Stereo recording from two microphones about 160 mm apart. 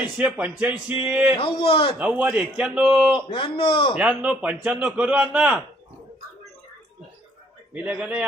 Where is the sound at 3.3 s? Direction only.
35° left (ahead or behind).